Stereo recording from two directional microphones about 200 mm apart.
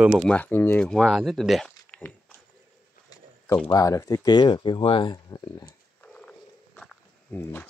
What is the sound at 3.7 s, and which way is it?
Speech, 15° left (ahead or behind).